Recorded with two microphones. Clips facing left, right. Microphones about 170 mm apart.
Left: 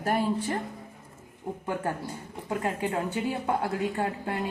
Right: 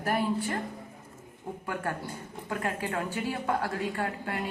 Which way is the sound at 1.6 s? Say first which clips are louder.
Left 3 dB; 25° left (ahead or behind).